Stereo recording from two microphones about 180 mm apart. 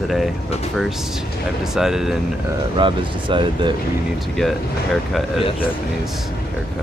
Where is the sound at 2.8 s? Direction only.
25° right (ahead or behind).